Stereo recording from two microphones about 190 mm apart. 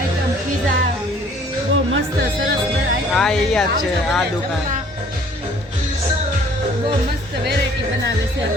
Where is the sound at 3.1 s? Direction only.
5° left (ahead or behind).